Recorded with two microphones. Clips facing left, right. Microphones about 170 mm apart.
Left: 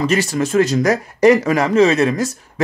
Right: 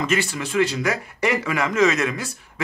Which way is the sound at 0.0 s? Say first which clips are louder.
Left 6 dB; 40° left (ahead or behind).